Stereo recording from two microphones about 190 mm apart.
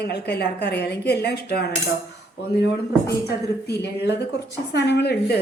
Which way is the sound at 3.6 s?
60° left (ahead or behind).